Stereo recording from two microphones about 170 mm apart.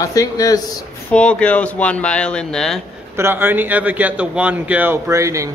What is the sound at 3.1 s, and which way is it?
Speech, 15° right (ahead or behind).